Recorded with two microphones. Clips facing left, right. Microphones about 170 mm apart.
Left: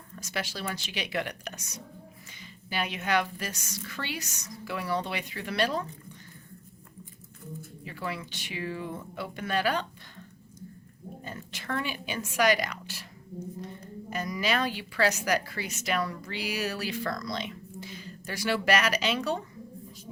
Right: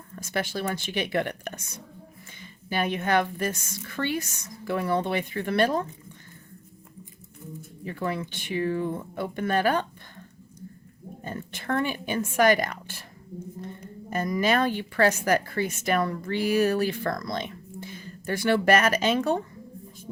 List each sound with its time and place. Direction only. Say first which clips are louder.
0.2 s a woman's voice: right 6 dB; 50° right (ahead or behind)
7.9 s a woman's voice: right 6 dB; 50° right (ahead or behind)
14.1 s a woman's voice: right 6 dB; 50° right (ahead or behind)